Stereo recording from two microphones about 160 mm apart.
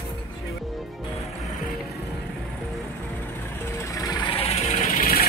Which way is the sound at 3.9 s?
25° left (ahead or behind).